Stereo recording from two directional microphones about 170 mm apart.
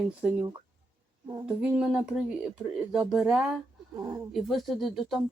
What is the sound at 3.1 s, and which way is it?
Speech, 5° right (ahead or behind).